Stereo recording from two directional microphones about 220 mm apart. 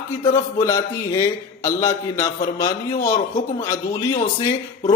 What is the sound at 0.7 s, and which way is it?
A man's voice, 15° left (ahead or behind).